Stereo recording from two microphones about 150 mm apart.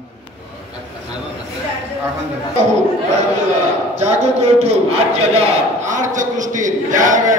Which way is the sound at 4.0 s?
45° right (ahead or behind).